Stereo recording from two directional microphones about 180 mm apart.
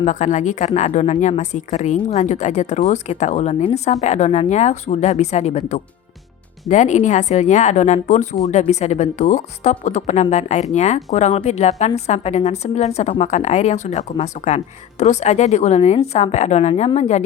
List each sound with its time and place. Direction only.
0.0 s a woman's voice: 40° left (ahead or behind)